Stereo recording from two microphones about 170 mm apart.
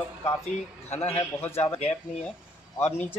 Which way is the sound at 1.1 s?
15° left (ahead or behind).